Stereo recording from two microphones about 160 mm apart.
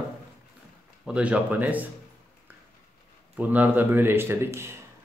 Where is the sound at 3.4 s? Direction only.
10° right (ahead or behind).